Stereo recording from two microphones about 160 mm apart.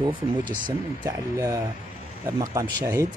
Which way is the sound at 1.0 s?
20° right (ahead or behind).